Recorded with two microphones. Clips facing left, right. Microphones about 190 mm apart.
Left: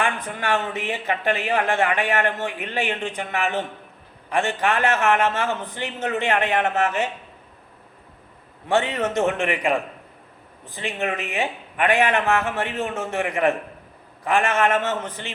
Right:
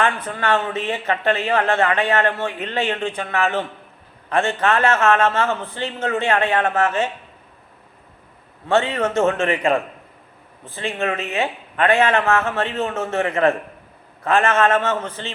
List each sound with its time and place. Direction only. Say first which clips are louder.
0.0 s a man's voice: right 4 dB; 15° left (ahead or behind)
8.6 s a man's voice: right 3 dB; 15° left (ahead or behind)